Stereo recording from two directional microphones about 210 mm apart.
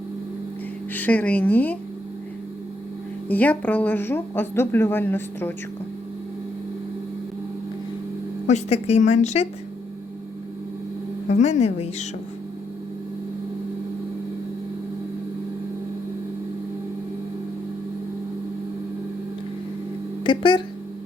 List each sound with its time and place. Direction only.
0.9 s speech: 5° left (ahead or behind)
3.2 s speech: 5° left (ahead or behind)
8.4 s a woman's voice: 30° left (ahead or behind)
11.3 s a woman's voice: 35° left (ahead or behind)
20.2 s speech: 25° left (ahead or behind)